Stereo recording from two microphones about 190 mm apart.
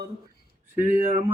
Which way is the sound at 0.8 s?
40° right (ahead or behind).